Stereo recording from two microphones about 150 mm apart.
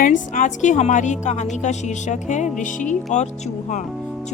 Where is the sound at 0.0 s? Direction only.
60° left (ahead or behind).